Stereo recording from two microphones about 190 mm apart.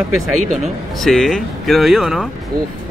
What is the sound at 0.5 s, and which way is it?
Speech, centre (ahead or behind).